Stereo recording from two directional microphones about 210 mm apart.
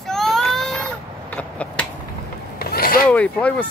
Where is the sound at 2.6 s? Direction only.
45° left (ahead or behind).